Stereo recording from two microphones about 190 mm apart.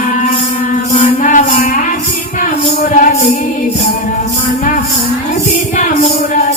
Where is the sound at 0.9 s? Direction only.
40° left (ahead or behind).